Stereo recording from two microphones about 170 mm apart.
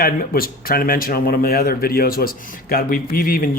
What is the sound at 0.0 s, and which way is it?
Speech, 60° left (ahead or behind).